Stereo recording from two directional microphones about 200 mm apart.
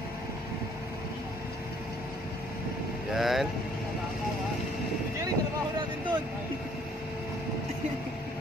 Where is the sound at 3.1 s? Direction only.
Centre (ahead or behind).